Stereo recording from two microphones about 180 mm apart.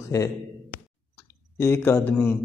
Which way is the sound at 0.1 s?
20° left (ahead or behind).